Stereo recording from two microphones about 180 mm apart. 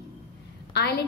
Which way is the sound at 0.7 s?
65° left (ahead or behind).